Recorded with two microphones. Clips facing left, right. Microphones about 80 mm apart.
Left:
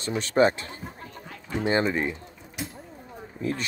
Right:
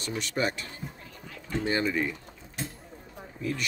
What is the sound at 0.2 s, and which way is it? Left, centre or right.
Speech, left.